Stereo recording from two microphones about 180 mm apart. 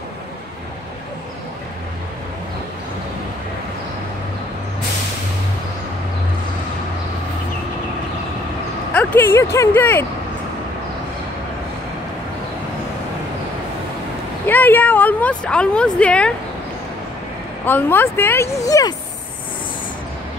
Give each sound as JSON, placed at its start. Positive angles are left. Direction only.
{"t": 8.9, "sound": "speech", "side_deg": 10}
{"t": 14.4, "sound": "a sound", "side_deg": 10}
{"t": 17.6, "sound": "speech", "side_deg": 10}